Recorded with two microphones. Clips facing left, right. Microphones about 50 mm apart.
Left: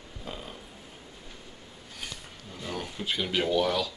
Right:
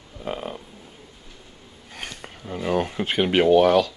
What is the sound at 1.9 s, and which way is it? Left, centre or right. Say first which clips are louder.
Speech: right 6 dB; right.